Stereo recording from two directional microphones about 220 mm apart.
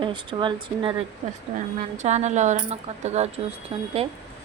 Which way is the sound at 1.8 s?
30° right (ahead or behind).